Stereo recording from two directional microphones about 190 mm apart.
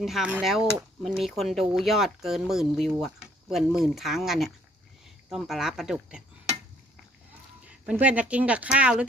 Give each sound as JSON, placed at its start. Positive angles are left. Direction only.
{"t": 0.0, "sound": "speech", "side_deg": 0}
{"t": 7.6, "sound": "speech", "side_deg": -5}